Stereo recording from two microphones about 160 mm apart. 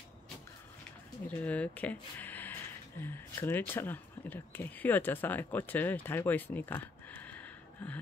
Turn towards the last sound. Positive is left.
turn(degrees=10)  # may be behind; listen again after turning